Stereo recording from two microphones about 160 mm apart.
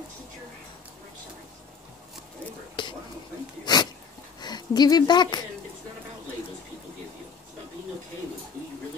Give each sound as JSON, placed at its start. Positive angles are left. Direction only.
{"t": 2.8, "sound": "whispering", "side_deg": 30}
{"t": 3.6, "sound": "a sound", "side_deg": 25}
{"t": 4.4, "sound": "speech", "side_deg": 25}